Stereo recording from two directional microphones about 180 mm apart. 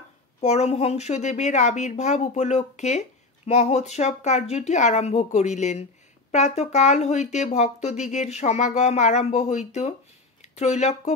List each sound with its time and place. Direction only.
0.4 s speech: 40° left (ahead or behind)